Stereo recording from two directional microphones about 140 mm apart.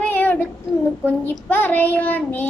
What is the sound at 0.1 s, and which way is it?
Child singing, 15° left (ahead or behind).